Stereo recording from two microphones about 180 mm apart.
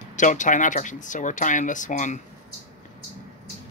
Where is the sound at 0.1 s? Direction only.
45° left (ahead or behind).